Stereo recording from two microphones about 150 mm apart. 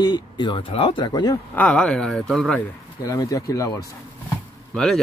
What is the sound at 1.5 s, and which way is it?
Speech, 10° left (ahead or behind).